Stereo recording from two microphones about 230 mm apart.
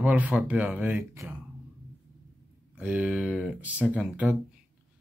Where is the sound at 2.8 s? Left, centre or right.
Centre.